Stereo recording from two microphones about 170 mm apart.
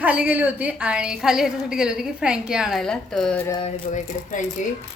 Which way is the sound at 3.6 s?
45° left (ahead or behind).